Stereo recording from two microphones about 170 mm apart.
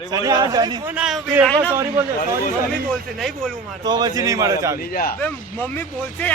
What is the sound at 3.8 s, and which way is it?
Speech, 25° right (ahead or behind).